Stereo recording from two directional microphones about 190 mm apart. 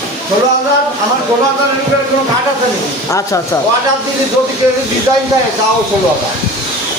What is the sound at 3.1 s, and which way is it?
Speech, 15° left (ahead or behind).